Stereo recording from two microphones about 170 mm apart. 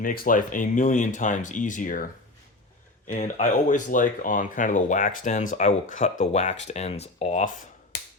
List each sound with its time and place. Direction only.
0.0 s speech: 55° left (ahead or behind)
3.1 s speech: 45° left (ahead or behind)